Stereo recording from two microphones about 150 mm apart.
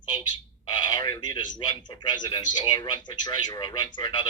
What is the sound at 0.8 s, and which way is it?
A man's voice, 30° left (ahead or behind).